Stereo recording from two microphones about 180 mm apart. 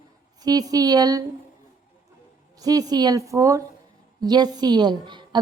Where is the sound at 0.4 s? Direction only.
20° right (ahead or behind).